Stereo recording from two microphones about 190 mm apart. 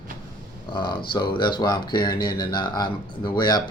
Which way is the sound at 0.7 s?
25° left (ahead or behind).